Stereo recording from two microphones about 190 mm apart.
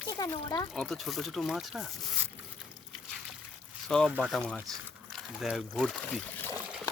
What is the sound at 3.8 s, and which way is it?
Speech, centre (ahead or behind).